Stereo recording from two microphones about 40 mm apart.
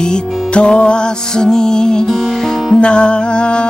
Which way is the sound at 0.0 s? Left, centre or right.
Left.